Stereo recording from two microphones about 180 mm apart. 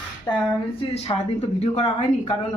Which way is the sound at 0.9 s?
35° left (ahead or behind).